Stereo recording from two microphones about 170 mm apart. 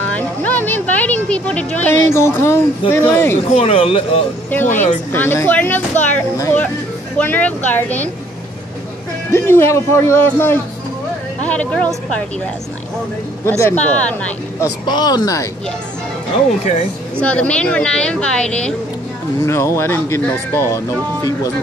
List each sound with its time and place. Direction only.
0.0 s a sound: 10° left (ahead or behind)
2.9 s speech: 15° left (ahead or behind)
3.5 s speech: 35° left (ahead or behind)
4.6 s speech: 45° left (ahead or behind)
5.1 s speech: 15° left (ahead or behind)
9.3 s speech: 15° left (ahead or behind)
13.5 s speech: 10° left (ahead or behind)
14.9 s speech: 25° left (ahead or behind)
17.2 s speech: 5° left (ahead or behind)